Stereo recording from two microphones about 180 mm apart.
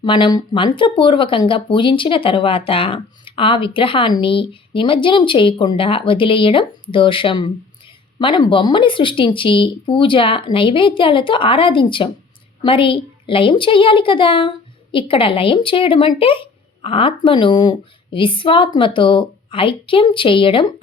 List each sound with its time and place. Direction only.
0.0 s speech: 25° left (ahead or behind)